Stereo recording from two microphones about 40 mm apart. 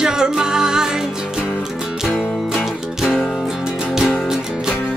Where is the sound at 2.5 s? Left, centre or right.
Centre.